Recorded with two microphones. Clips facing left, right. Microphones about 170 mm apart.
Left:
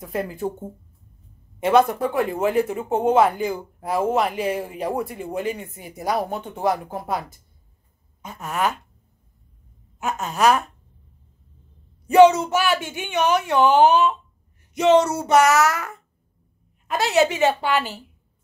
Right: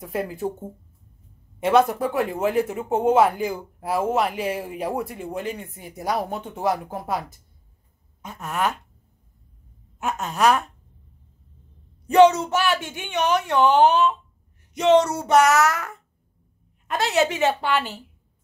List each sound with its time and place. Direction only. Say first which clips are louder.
0.0 s speech: left 1 dB; 5° right (ahead or behind)
9.9 s speech: left 1 dB; centre (ahead or behind)
12.1 s speech: left 2 dB; 5° left (ahead or behind)
16.9 s speech: left 2 dB; centre (ahead or behind)